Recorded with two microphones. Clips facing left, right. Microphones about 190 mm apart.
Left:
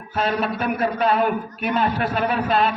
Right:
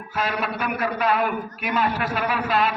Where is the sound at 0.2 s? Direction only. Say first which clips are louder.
Left 4 dB; 30° left (ahead or behind).